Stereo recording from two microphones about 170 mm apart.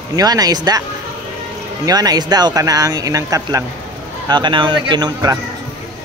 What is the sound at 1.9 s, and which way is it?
Speech, 25° right (ahead or behind).